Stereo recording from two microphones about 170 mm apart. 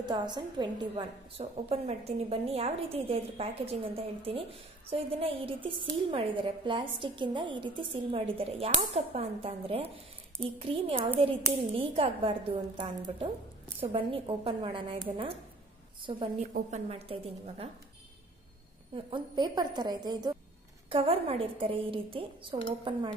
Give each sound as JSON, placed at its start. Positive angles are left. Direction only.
{"t": 0.1, "sound": "a woman's voice", "side_deg": -25}
{"t": 1.4, "sound": "a woman's voice", "side_deg": -35}
{"t": 19.0, "sound": "a woman's voice", "side_deg": -30}